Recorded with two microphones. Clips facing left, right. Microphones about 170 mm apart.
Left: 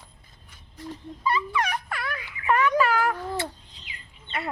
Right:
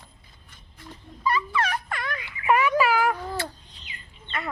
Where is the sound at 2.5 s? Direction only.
10° right (ahead or behind).